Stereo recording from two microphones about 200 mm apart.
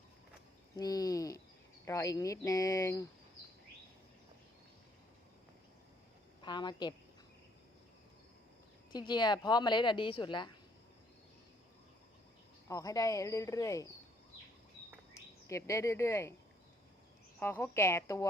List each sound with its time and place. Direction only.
0.8 s speech: 20° left (ahead or behind)
6.4 s speech: 20° left (ahead or behind)
8.9 s speech: 20° left (ahead or behind)
12.6 s speech: 15° left (ahead or behind)
15.4 s speech: 15° left (ahead or behind)
17.4 s speech: 10° left (ahead or behind)